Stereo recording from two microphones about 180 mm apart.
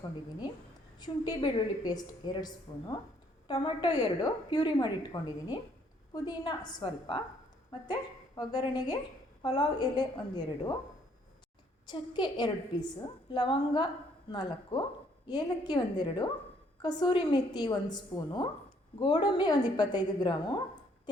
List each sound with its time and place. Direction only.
0.9 s a woman's voice: 25° left (ahead or behind)
8.4 s a woman's voice: 25° left (ahead or behind)
11.9 s a woman's voice: 25° left (ahead or behind)